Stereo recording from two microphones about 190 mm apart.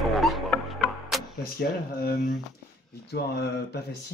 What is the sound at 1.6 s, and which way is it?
Speech, 60° left (ahead or behind).